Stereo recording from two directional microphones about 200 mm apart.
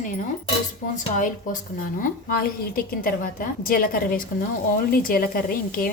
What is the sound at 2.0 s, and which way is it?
A woman's voice, 45° left (ahead or behind).